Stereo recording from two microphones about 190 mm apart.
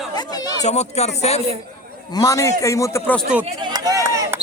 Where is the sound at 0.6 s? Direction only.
35° left (ahead or behind).